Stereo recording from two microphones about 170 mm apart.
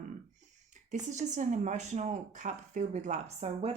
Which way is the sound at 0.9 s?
45° right (ahead or behind).